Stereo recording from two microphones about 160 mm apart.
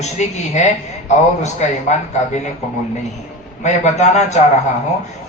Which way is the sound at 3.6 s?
45° left (ahead or behind).